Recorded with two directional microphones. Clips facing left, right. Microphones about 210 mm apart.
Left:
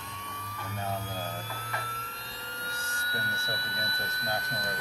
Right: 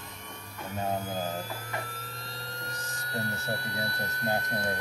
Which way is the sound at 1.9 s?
40° right (ahead or behind).